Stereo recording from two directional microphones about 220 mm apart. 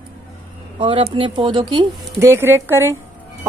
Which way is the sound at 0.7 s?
25° right (ahead or behind).